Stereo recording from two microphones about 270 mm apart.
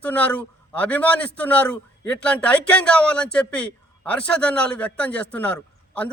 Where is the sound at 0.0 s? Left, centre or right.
Centre.